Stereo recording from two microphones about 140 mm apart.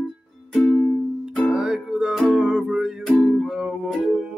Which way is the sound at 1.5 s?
5° right (ahead or behind).